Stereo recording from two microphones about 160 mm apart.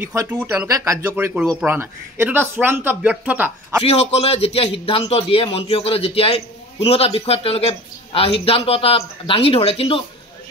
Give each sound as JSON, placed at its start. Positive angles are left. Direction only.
{"t": 0.0, "sound": "speech", "side_deg": -15}
{"t": 1.4, "sound": "speech", "side_deg": 0}
{"t": 1.7, "sound": "speech", "side_deg": -15}
{"t": 3.8, "sound": "a man's voice", "side_deg": 40}